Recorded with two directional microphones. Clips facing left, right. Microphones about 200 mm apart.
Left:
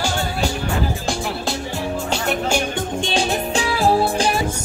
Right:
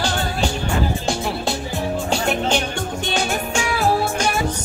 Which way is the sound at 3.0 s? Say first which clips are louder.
Left 2 dB; 30° left (ahead or behind).